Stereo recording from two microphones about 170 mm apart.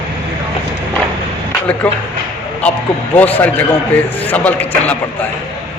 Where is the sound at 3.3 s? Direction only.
10° left (ahead or behind).